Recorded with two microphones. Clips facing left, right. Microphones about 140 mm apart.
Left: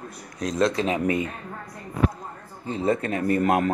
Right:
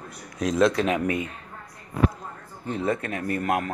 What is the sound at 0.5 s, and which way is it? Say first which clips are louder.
Speech: right 1 dB; 25° left (ahead or behind).